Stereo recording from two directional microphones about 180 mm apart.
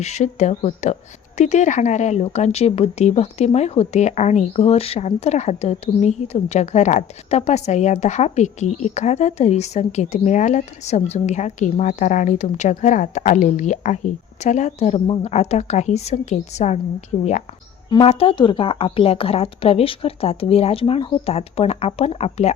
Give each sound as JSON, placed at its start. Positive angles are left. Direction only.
{"t": 0.0, "sound": "speech", "side_deg": 40}
{"t": 17.8, "sound": "speech", "side_deg": 30}